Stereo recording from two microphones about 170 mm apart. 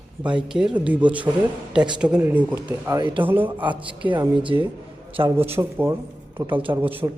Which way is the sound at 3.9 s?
30° right (ahead or behind).